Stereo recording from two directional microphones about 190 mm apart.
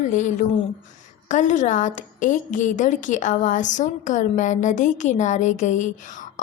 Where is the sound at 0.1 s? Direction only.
40° left (ahead or behind).